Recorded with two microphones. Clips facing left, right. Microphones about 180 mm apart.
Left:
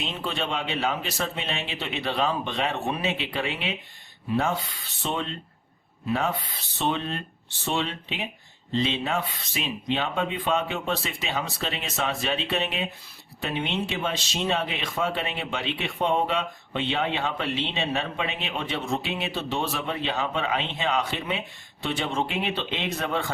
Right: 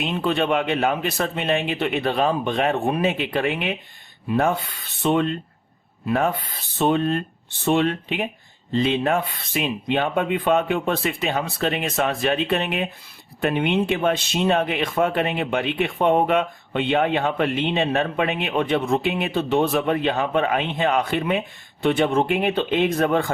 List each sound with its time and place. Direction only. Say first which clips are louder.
0.0 s speech: right 8 dB; 55° right (ahead or behind)